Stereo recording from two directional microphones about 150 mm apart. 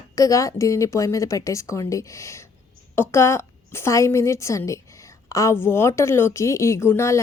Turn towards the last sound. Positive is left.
turn(degrees=20)  # may be behind; listen again after turning